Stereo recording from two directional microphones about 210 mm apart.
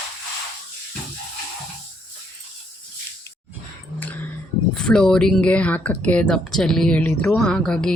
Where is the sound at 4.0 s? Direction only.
10° left (ahead or behind).